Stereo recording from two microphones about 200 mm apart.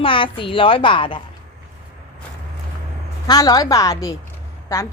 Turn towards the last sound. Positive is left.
turn(degrees=15)  # may be behind; listen again after turning